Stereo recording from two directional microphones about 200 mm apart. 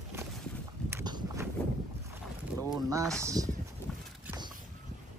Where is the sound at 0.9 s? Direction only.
20° right (ahead or behind).